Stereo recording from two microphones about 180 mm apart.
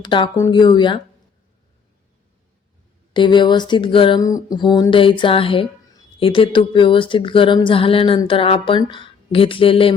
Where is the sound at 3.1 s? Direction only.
25° left (ahead or behind).